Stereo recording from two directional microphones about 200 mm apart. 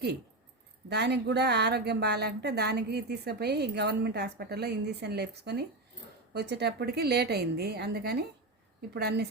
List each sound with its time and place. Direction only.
0.9 s a woman's voice: 55° right (ahead or behind)